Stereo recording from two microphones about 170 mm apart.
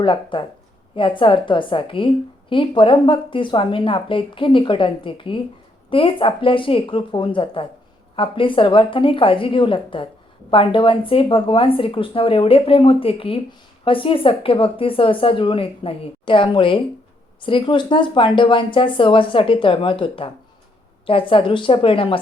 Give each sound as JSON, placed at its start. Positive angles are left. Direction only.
{"t": 0.0, "sound": "speech", "side_deg": 30}